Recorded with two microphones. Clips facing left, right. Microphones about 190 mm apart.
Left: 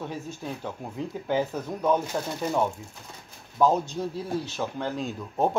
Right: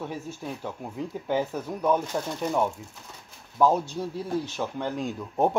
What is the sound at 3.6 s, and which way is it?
Speech, 10° right (ahead or behind).